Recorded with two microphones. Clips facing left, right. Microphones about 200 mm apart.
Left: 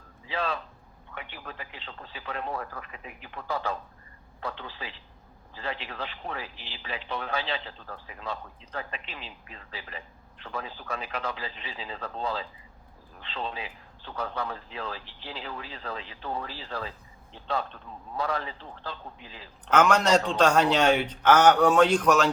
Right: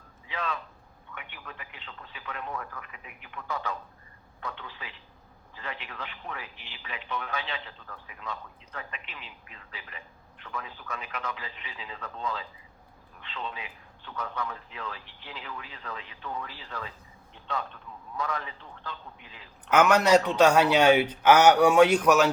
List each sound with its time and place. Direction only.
0.3 s a sound: 30° left (ahead or behind)
1.1 s a man's voice: 30° left (ahead or behind)
19.7 s speech: 10° right (ahead or behind)